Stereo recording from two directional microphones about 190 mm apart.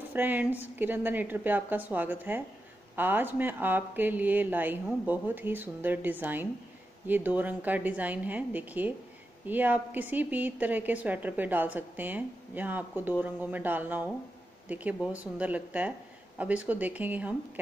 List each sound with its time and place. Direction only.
0.1 s speech: 10° right (ahead or behind)